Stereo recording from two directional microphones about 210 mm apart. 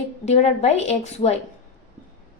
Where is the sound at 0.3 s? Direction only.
30° left (ahead or behind).